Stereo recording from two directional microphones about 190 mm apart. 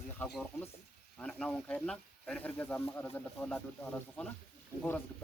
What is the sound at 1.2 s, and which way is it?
Speech, 5° left (ahead or behind).